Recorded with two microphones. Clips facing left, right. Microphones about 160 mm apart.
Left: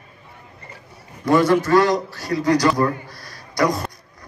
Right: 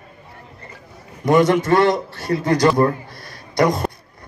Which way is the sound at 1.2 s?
20° right (ahead or behind).